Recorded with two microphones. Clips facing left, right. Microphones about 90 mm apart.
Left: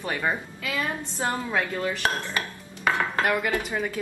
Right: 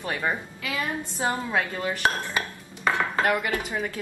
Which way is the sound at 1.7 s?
20° right (ahead or behind).